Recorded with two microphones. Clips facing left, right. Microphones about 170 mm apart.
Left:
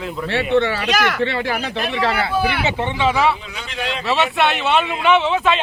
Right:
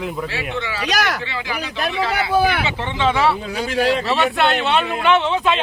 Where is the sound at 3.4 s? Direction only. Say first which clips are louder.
Right 8 dB; 40° right (ahead or behind).